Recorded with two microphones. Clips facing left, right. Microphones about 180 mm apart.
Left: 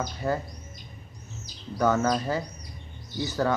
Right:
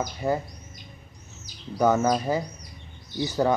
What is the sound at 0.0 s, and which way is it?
Speech, 15° right (ahead or behind).